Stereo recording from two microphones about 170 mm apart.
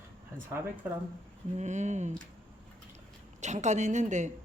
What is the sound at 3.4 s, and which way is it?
Speech, 45° right (ahead or behind).